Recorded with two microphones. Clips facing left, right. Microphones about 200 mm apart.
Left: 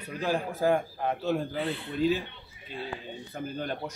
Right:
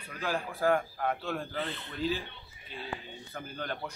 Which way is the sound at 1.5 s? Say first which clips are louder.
Left 5 dB; 10° left (ahead or behind).